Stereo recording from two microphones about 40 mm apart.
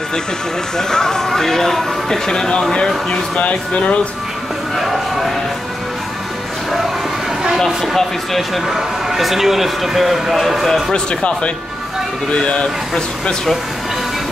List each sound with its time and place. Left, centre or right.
0.7 s speech: centre
3.3 s speech: left
4.7 s music: centre
7.5 s a man's voice: centre
10.9 s speech: left